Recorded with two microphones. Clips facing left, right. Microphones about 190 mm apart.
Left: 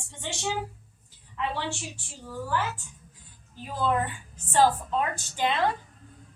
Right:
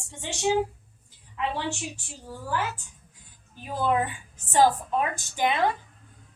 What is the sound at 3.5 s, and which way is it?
A woman's voice, 15° right (ahead or behind).